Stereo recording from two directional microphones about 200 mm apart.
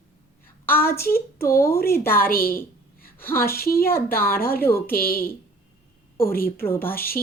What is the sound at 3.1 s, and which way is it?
Speech, 10° left (ahead or behind).